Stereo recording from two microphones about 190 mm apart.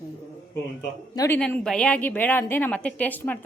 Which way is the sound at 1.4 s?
5° left (ahead or behind).